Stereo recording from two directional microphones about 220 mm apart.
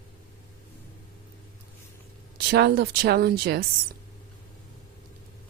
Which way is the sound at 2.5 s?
45° right (ahead or behind).